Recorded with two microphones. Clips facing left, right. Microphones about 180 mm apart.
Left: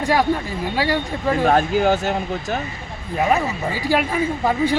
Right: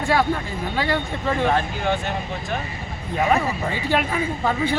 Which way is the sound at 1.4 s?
40° left (ahead or behind).